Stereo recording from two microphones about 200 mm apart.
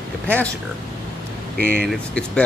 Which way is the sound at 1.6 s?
5° left (ahead or behind).